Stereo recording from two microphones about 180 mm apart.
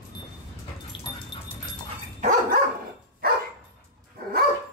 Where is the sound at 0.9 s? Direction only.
30° left (ahead or behind).